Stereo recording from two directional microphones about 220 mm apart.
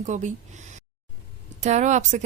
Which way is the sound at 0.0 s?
35° right (ahead or behind).